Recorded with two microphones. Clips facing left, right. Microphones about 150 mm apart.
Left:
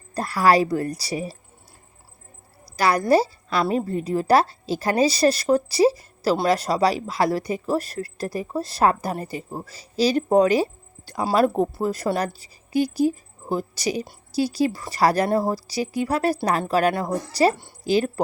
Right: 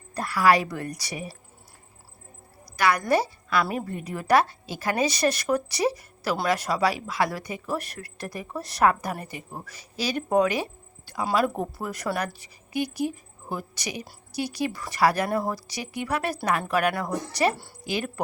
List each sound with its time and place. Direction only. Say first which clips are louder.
0.1 s speech: left 3 dB; 35° left (ahead or behind)
2.7 s speech: left 4 dB; 35° left (ahead or behind)
11.5 s a woman's voice: left 8 dB; 25° left (ahead or behind)